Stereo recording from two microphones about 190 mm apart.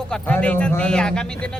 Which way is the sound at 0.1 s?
10° left (ahead or behind).